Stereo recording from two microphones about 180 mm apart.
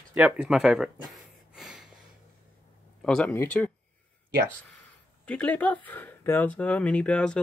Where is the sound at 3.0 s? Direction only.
5° left (ahead or behind).